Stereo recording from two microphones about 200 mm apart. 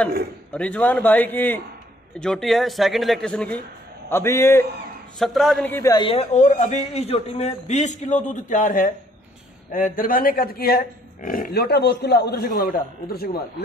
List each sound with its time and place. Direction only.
0.5 s a man's voice: 5° left (ahead or behind)
5.2 s a man's voice: centre (ahead or behind); by 13.4 s 50° left (ahead or behind)